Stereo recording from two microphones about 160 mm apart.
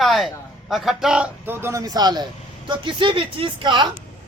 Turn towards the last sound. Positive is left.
turn(degrees=-30)  # may be behind; listen again after turning